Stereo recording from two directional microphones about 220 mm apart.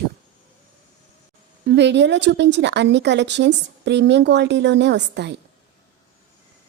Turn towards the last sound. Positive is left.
turn(degrees=-50)  # may be behind; listen again after turning